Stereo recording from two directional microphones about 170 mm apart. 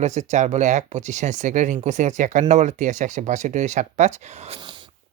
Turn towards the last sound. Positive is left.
turn(degrees=-25)  # may be behind; listen again after turning